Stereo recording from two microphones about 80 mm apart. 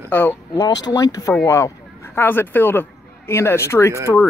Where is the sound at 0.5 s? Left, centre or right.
Left.